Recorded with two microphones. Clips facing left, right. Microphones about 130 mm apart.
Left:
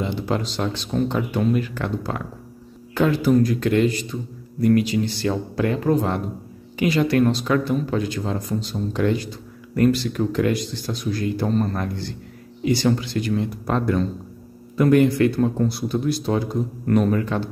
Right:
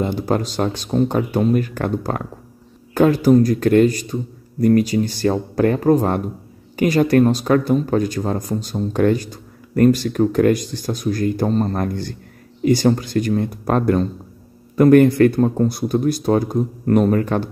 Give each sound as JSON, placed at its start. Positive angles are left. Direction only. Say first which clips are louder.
{"t": 0.0, "sound": "a man's voice", "louder": "right 4 dB", "side_deg": -45}